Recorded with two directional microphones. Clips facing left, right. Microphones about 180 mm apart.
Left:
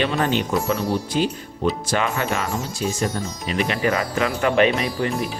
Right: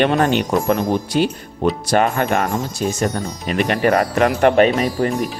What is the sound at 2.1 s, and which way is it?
Speech, 55° right (ahead or behind).